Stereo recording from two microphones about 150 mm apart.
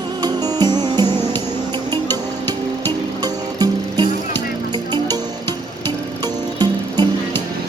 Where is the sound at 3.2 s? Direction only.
30° right (ahead or behind).